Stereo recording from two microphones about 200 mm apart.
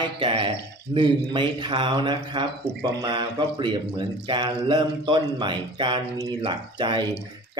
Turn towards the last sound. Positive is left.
turn(degrees=-20)  # may be behind; listen again after turning